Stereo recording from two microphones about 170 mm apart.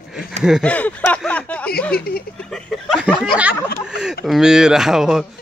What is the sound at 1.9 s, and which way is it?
Speech, 65° left (ahead or behind).